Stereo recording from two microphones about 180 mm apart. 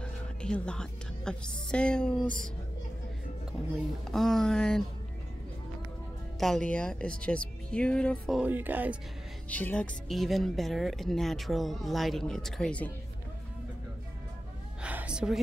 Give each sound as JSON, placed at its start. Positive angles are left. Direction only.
{"t": 0.0, "sound": "music", "side_deg": 5}
{"t": 1.7, "sound": "speech", "side_deg": 5}
{"t": 4.1, "sound": "speech", "side_deg": 0}
{"t": 6.4, "sound": "speech", "side_deg": 5}
{"t": 8.4, "sound": "speech", "side_deg": -10}
{"t": 9.5, "sound": "speech", "side_deg": 10}
{"t": 14.8, "sound": "a sound", "side_deg": -5}